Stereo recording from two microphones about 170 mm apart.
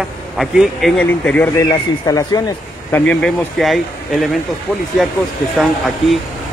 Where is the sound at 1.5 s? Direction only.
20° left (ahead or behind).